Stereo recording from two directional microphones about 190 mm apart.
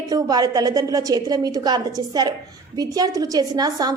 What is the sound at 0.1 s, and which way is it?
A woman's voice, 20° right (ahead or behind).